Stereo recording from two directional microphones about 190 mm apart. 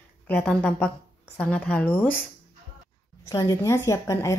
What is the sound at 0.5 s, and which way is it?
A woman's voice, 5° left (ahead or behind).